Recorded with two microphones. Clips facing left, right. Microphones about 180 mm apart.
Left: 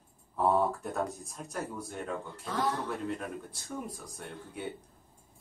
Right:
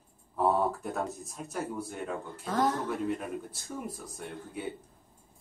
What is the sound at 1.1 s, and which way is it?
Speech, centre (ahead or behind).